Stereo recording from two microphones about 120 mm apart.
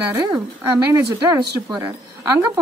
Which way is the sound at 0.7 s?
20° right (ahead or behind).